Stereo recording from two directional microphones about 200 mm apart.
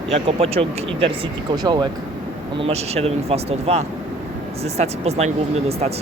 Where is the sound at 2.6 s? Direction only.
30° right (ahead or behind).